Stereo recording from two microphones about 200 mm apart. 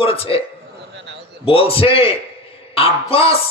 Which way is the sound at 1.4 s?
30° left (ahead or behind).